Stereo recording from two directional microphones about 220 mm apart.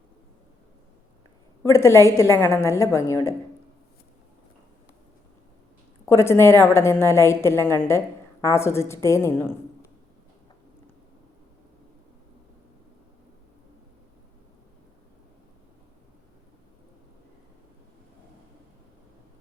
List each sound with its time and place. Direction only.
1.6 s a woman's voice: 10° left (ahead or behind)
6.1 s a woman's voice: 10° left (ahead or behind)